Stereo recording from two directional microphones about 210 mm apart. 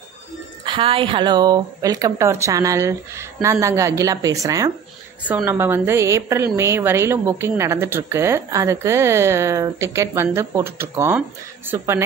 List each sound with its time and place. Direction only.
0.7 s a woman's voice: 25° right (ahead or behind)